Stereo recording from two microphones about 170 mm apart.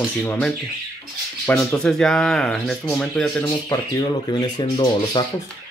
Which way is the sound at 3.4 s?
20° left (ahead or behind).